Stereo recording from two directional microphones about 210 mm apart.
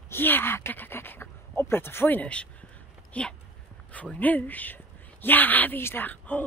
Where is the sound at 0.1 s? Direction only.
10° left (ahead or behind).